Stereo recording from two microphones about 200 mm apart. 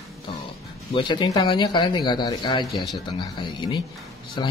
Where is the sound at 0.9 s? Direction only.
25° left (ahead or behind).